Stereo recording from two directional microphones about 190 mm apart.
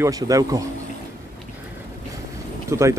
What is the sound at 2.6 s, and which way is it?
Speech, 15° right (ahead or behind).